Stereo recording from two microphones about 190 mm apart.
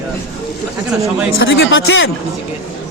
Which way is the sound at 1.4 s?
75° left (ahead or behind).